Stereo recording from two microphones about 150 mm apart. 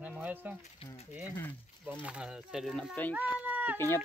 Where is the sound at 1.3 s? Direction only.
10° left (ahead or behind).